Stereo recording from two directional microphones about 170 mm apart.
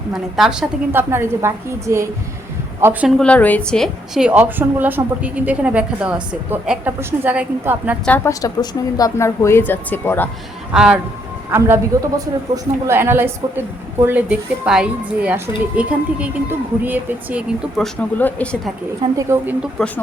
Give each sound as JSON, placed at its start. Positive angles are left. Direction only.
{"t": 0.1, "sound": "a woman's voice", "side_deg": 0}
{"t": 1.1, "sound": "a woman's voice", "side_deg": -15}
{"t": 3.2, "sound": "a woman's voice", "side_deg": 5}
{"t": 8.0, "sound": "speech", "side_deg": 10}
{"t": 10.7, "sound": "a woman's voice", "side_deg": -5}
{"t": 12.8, "sound": "a woman's voice", "side_deg": -15}
{"t": 17.7, "sound": "speech", "side_deg": 10}
{"t": 19.1, "sound": "a woman's voice", "side_deg": -15}
{"t": 19.8, "sound": "a woman's voice", "side_deg": 0}